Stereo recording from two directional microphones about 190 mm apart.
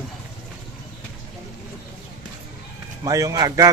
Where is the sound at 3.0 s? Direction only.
20° right (ahead or behind).